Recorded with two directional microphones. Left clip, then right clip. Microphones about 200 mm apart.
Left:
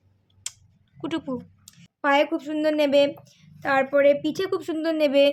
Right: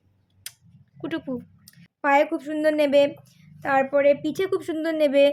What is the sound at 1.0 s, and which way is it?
A woman's voice, 10° left (ahead or behind).